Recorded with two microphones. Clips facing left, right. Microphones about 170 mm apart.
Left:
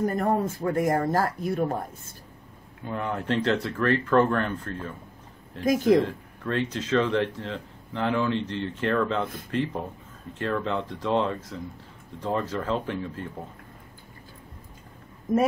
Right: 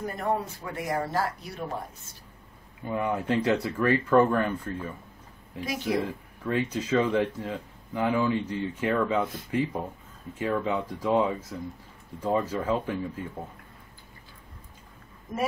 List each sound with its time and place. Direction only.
0.0 s speech: 45° left (ahead or behind)
2.8 s speech: 10° right (ahead or behind)